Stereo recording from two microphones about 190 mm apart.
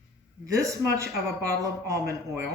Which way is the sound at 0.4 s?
15° right (ahead or behind).